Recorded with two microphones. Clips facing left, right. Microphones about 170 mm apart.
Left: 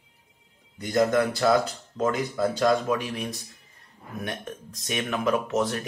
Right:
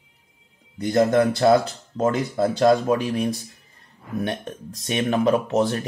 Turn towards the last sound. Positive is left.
turn(degrees=-30)  # may be behind; listen again after turning